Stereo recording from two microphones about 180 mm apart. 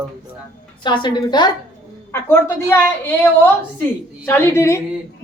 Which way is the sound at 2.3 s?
15° left (ahead or behind).